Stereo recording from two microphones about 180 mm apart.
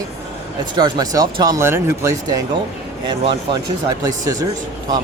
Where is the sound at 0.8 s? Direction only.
20° right (ahead or behind).